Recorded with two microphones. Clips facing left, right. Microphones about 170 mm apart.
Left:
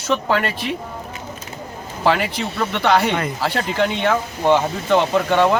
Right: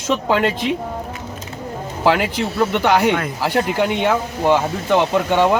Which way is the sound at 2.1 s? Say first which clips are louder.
Right 2 dB; 15° right (ahead or behind).